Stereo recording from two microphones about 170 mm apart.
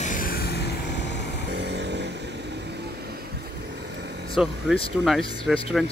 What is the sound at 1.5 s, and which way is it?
Vehicle, 90° right.